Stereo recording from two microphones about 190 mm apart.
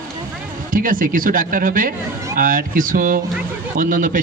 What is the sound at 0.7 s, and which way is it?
A man's voice, 45° right (ahead or behind).